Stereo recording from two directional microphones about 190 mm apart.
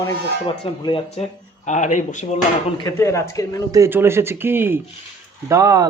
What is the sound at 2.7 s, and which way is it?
Speech, 20° left (ahead or behind).